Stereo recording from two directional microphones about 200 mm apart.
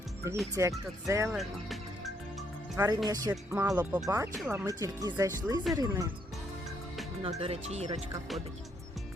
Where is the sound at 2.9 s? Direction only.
20° right (ahead or behind).